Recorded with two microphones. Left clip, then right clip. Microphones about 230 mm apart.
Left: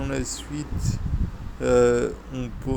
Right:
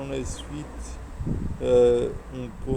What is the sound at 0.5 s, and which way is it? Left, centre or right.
Speech, left.